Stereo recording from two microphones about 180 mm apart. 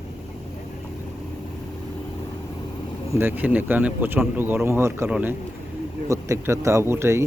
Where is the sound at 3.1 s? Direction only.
10° right (ahead or behind).